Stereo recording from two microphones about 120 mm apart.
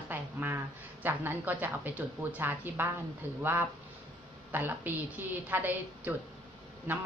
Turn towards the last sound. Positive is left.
turn(degrees=-15)  # may be behind; listen again after turning